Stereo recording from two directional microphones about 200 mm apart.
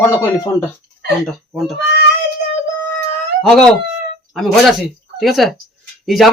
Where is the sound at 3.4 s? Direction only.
5° left (ahead or behind).